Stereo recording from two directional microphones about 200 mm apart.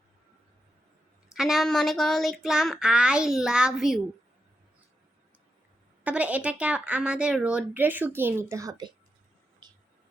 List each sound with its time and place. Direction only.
1.3 s speech: centre (ahead or behind)
6.0 s a woman's voice: 5° right (ahead or behind)
9.6 s a sound: 20° right (ahead or behind)